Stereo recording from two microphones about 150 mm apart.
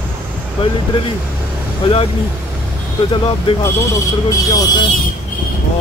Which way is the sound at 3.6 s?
20° left (ahead or behind).